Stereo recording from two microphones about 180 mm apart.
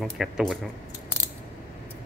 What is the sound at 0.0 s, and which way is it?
Speech, centre (ahead or behind).